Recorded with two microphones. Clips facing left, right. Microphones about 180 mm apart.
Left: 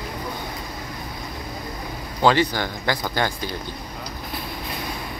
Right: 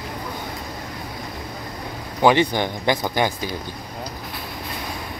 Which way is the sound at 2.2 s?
20° right (ahead or behind).